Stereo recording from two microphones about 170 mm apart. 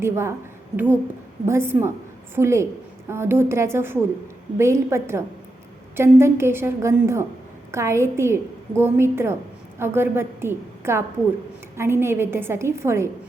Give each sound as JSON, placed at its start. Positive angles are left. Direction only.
{"t": 0.0, "sound": "a woman's voice", "side_deg": -15}
{"t": 1.5, "sound": "a woman's voice", "side_deg": -15}